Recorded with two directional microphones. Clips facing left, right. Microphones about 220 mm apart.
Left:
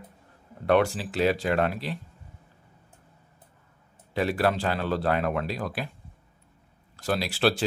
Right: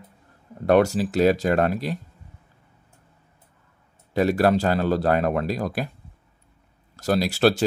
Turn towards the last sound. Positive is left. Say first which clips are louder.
# right 5 dB
turn(degrees=-45)  # may be behind; listen again after turning